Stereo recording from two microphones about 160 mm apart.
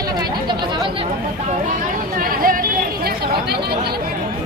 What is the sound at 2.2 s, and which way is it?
Speech, 65° right (ahead or behind).